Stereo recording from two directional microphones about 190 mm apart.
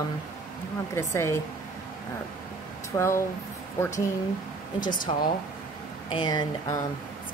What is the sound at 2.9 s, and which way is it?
Speech, 15° left (ahead or behind).